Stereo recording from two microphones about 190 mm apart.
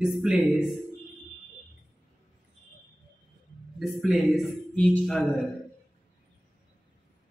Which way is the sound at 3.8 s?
Centre (ahead or behind).